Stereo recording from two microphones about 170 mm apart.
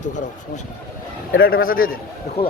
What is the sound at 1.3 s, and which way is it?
A man's voice, 60° left (ahead or behind).